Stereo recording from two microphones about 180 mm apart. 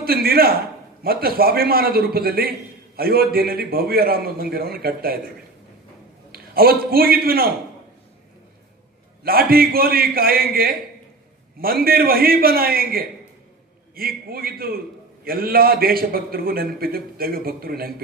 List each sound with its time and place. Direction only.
0.0 s a man's voice: 55° right (ahead or behind)
6.3 s a man's voice: 55° right (ahead or behind)
9.2 s a man's voice: 55° right (ahead or behind)